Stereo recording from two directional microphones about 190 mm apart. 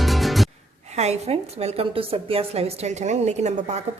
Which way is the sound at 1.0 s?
35° right (ahead or behind).